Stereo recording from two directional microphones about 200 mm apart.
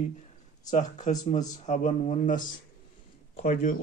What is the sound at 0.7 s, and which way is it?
Speech, 35° left (ahead or behind).